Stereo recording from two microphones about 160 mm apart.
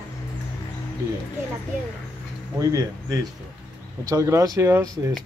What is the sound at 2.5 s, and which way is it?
Speech, 20° right (ahead or behind).